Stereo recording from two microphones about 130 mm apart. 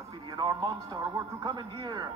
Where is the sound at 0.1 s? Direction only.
30° right (ahead or behind).